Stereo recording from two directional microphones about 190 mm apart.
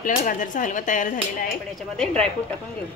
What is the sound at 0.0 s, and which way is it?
Speech, 45° left (ahead or behind).